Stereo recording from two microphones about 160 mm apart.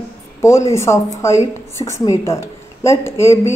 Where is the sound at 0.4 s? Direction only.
20° left (ahead or behind).